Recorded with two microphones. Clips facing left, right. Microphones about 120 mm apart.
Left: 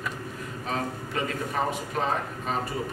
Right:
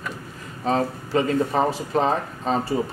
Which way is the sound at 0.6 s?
30° right (ahead or behind).